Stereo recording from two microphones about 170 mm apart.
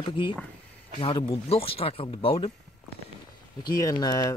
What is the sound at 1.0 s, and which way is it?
Speech, 30° left (ahead or behind).